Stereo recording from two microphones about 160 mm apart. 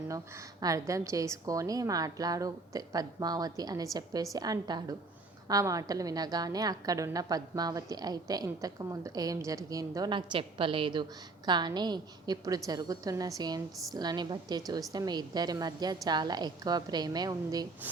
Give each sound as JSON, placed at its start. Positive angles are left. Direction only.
{"t": 0.6, "sound": "a woman's voice", "side_deg": -20}